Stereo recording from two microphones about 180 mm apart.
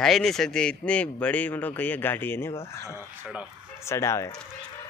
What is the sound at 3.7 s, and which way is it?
Speech, 15° left (ahead or behind).